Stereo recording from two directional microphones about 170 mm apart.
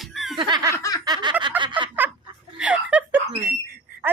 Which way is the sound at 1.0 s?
25° right (ahead or behind).